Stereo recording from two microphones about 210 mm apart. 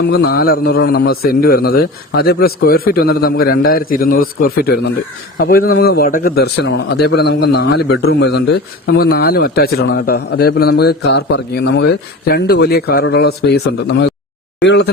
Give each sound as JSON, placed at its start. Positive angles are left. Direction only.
{"t": 0.0, "sound": "a man's voice", "side_deg": 50}